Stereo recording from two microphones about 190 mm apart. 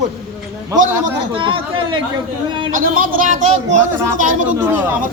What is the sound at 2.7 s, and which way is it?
Speech, 45° right (ahead or behind).